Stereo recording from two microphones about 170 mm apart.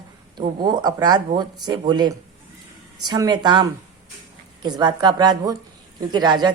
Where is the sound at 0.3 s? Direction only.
25° right (ahead or behind).